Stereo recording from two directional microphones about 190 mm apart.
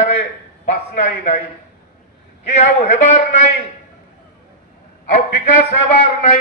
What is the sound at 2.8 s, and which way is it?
Speech, 35° left (ahead or behind).